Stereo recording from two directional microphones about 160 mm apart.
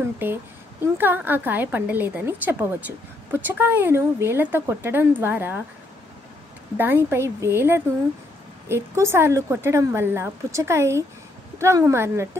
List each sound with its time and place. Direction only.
0.0 s speech: 15° right (ahead or behind)
6.8 s speech: 15° right (ahead or behind)